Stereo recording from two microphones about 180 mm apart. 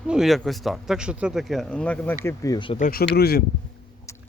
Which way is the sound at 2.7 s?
50° left (ahead or behind).